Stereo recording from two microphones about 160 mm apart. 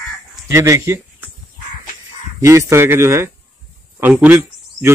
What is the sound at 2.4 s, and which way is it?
A man's voice, 15° right (ahead or behind).